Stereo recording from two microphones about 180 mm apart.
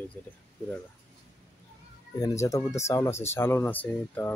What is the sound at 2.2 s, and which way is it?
Speech, 15° left (ahead or behind).